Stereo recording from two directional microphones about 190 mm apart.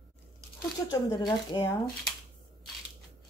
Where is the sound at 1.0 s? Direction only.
25° left (ahead or behind).